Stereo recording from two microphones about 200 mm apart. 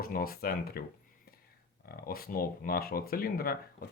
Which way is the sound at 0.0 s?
45° left (ahead or behind).